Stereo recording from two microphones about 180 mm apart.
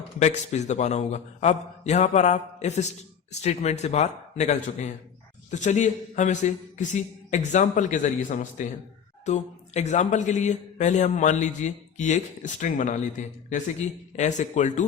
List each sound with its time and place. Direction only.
0.2 s a man's voice: 40° left (ahead or behind)